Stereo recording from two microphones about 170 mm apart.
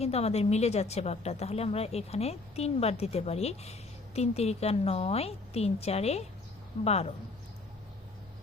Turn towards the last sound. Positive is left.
turn(degrees=35)  # may be behind; listen again after turning